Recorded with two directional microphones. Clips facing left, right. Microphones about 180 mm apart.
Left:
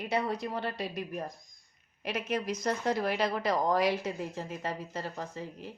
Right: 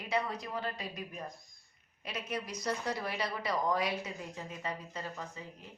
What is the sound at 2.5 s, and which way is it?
A woman's voice, 50° left (ahead or behind).